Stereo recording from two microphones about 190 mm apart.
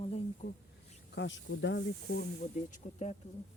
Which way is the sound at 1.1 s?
65° left (ahead or behind).